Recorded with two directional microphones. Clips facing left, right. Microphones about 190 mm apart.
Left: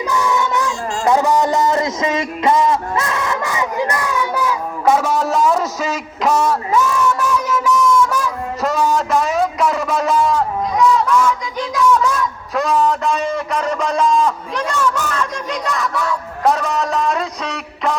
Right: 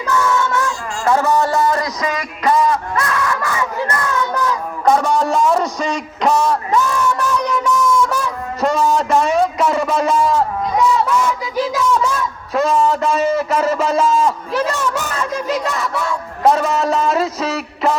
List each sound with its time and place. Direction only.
0.1 s child singing: 15° left (ahead or behind)
1.0 s a man's voice: 15° left (ahead or behind)
7.3 s a sound: 5° left (ahead or behind)